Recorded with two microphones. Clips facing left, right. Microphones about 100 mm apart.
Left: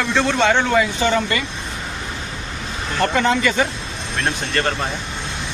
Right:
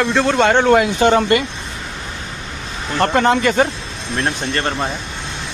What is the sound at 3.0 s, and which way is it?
Speech, 50° right (ahead or behind).